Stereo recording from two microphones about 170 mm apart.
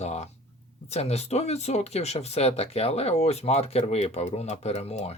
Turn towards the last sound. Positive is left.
turn(degrees=40)  # may be behind; listen again after turning